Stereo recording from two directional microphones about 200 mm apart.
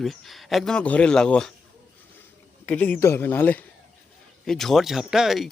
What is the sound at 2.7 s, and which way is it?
A man's voice, 5° left (ahead or behind).